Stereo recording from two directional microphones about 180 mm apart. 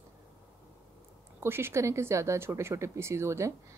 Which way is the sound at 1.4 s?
15° right (ahead or behind).